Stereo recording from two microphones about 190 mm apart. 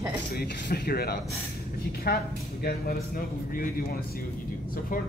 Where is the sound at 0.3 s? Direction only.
55° left (ahead or behind).